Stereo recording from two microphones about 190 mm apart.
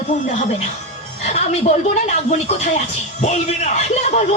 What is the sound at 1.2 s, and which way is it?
Speech, 35° left (ahead or behind).